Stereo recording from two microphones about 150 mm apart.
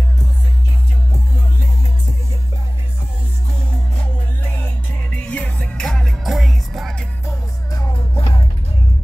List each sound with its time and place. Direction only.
5.1 s music: 10° left (ahead or behind)
7.2 s music: 25° left (ahead or behind)
7.9 s music: 40° left (ahead or behind)